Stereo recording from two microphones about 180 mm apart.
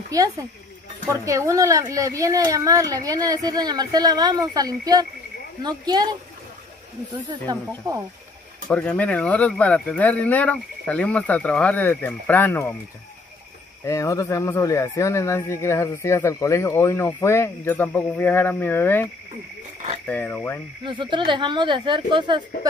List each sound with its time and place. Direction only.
0.1 s speech: 20° right (ahead or behind)
8.6 s speech: 5° left (ahead or behind)
13.8 s speech: 15° left (ahead or behind)
20.1 s speech: 10° left (ahead or behind)
20.8 s speech: 25° right (ahead or behind)